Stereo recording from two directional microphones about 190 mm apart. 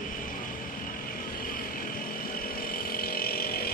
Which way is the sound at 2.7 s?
50° left (ahead or behind).